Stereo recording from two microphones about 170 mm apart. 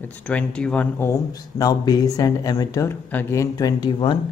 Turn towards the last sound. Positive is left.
turn(degrees=25)  # may be behind; listen again after turning